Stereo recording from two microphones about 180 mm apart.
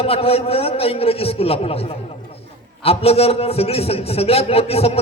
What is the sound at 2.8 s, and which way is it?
A man's voice, 35° left (ahead or behind).